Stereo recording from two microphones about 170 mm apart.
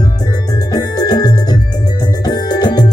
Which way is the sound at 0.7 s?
20° left (ahead or behind).